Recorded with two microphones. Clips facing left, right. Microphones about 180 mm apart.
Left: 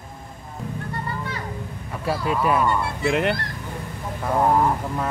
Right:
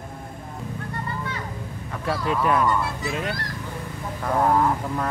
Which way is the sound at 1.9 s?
5° left (ahead or behind).